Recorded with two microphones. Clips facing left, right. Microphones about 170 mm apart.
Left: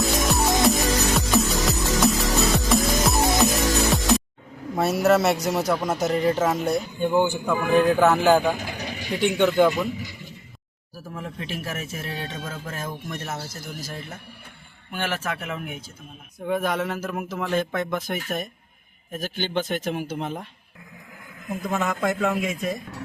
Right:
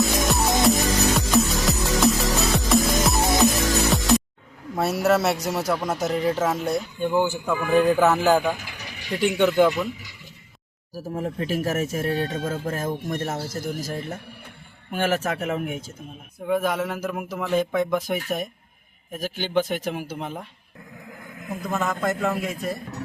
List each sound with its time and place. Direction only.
0.0 s music: centre (ahead or behind)
4.8 s speech: centre (ahead or behind)
10.9 s speech: 40° right (ahead or behind)
16.5 s speech: 5° right (ahead or behind)
21.6 s speech: centre (ahead or behind)